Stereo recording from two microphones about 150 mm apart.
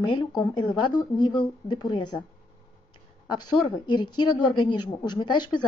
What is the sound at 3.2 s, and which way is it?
A woman's voice, 30° left (ahead or behind).